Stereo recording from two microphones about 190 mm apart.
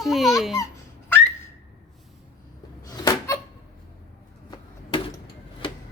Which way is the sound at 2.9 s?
15° left (ahead or behind).